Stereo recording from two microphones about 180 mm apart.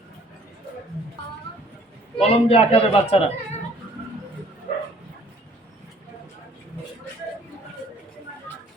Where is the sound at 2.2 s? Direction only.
30° left (ahead or behind).